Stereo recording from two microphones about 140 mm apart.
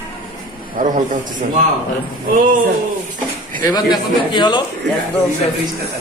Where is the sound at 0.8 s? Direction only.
75° right (ahead or behind).